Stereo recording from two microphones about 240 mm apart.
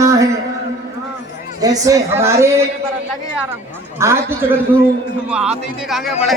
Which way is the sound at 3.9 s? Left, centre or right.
Centre.